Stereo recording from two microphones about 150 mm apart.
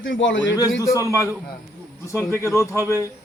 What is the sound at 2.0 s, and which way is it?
Speech, 20° left (ahead or behind).